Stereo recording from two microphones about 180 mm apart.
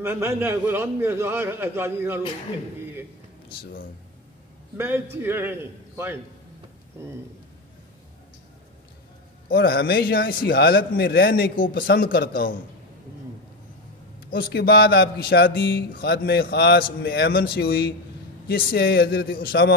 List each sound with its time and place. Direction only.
0.0 s a man's voice: 15° right (ahead or behind)
4.7 s a man's voice: 10° right (ahead or behind)
9.5 s a man's voice: 60° left (ahead or behind)
14.3 s a man's voice: 60° left (ahead or behind)